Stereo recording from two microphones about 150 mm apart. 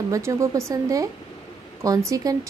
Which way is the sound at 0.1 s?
20° right (ahead or behind).